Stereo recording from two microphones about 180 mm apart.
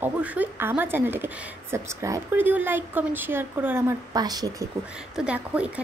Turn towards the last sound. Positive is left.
turn(degrees=-10)  # may be behind; listen again after turning